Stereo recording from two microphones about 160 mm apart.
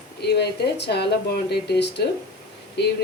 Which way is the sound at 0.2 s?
90° left.